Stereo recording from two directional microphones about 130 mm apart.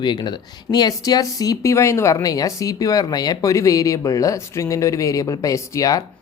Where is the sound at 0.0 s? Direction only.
35° left (ahead or behind).